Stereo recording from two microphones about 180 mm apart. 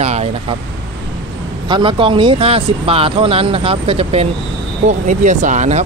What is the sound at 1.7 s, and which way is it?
Speech, 25° right (ahead or behind).